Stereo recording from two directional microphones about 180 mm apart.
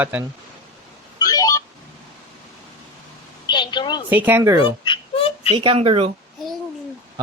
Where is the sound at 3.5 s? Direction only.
25° left (ahead or behind).